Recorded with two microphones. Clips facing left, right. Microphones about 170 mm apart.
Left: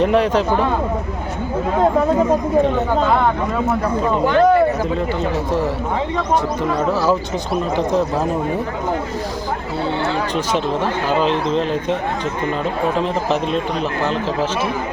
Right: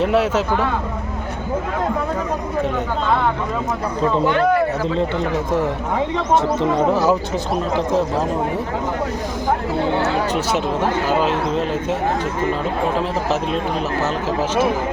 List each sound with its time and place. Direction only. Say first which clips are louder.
0.0 s speech: left 2 dB; 5° right (ahead or behind)
4.3 s a man's voice: left 6 dB; 35° left (ahead or behind)
6.3 s speech: right 3 dB; 20° right (ahead or behind)
10.3 s speech: left 1 dB; 10° right (ahead or behind)
13.0 s speech: left 2 dB; 5° right (ahead or behind)